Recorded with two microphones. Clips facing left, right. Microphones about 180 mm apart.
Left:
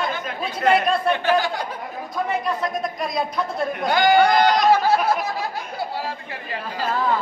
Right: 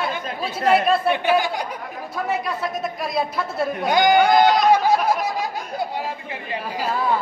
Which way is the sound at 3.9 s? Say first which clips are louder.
Right 1 dB; 15° right (ahead or behind).